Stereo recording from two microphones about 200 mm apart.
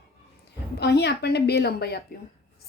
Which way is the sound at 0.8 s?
55° left (ahead or behind).